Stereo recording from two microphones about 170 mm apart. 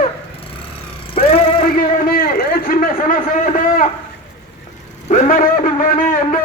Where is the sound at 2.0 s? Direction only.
60° left (ahead or behind).